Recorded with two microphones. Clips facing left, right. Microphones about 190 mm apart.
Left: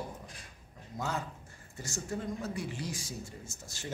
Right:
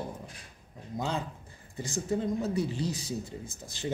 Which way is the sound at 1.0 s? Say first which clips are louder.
Right 3 dB; 20° right (ahead or behind).